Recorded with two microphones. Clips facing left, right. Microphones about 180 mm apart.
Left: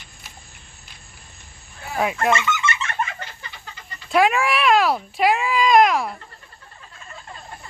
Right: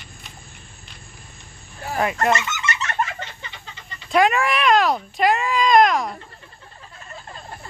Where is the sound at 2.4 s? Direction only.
40° right (ahead or behind).